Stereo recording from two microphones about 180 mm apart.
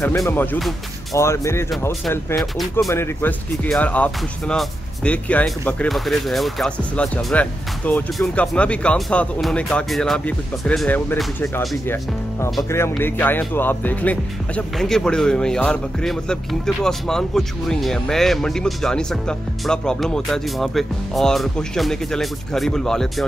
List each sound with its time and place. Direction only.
0.0 s speech: 15° left (ahead or behind)
2.0 s speech: 5° left (ahead or behind)
2.9 s speech: 15° left (ahead or behind)
13.0 s speech: 10° left (ahead or behind)